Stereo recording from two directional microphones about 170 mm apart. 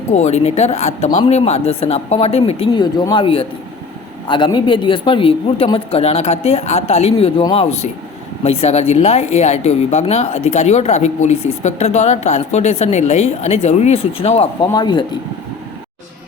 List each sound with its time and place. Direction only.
0.1 s speech: 40° left (ahead or behind)
14.7 s speech: 25° left (ahead or behind)